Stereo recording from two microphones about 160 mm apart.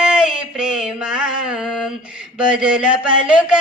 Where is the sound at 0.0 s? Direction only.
5° right (ahead or behind).